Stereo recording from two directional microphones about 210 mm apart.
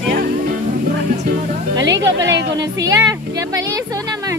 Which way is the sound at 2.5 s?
20° right (ahead or behind).